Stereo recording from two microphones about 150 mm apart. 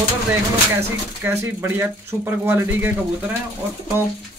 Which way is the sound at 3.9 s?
15° right (ahead or behind).